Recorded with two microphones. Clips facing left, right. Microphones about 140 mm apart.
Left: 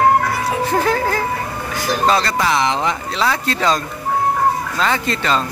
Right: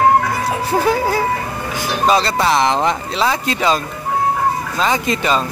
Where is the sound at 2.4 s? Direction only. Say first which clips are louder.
Right 3 dB; 40° right (ahead or behind).